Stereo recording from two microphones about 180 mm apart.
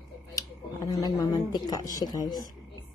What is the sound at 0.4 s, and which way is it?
Speech, 20° left (ahead or behind).